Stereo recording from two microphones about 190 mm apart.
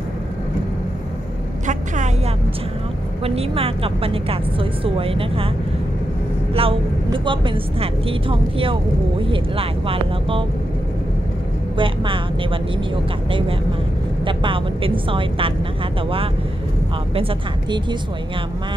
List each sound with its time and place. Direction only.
3.3 s a woman's voice: 30° right (ahead or behind)
6.5 s a woman's voice: 30° right (ahead or behind)
11.7 s a woman's voice: 25° right (ahead or behind)
14.2 s a woman's voice: 25° right (ahead or behind)
17.1 s a woman's voice: 30° right (ahead or behind)